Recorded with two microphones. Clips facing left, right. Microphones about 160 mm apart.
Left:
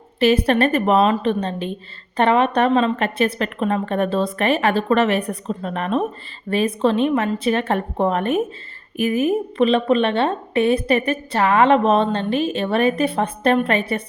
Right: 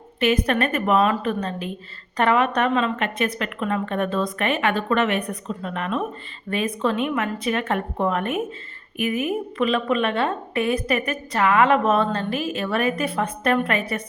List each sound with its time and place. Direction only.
0.2 s a woman's voice: 30° left (ahead or behind)